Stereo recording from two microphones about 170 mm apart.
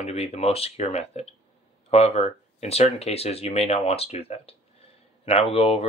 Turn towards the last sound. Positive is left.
turn(degrees=35)  # may be behind; listen again after turning